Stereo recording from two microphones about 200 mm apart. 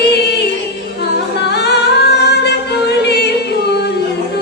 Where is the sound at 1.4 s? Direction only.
55° left (ahead or behind).